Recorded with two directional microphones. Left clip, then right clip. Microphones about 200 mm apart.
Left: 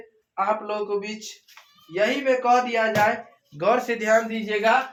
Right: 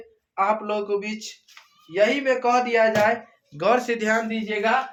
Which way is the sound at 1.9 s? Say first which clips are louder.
Right 1 dB; 50° right (ahead or behind).